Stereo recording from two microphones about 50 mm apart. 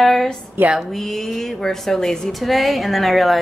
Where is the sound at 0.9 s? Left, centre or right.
Centre.